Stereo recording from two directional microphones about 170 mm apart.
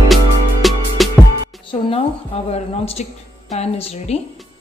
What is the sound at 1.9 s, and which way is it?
Speech, 35° left (ahead or behind).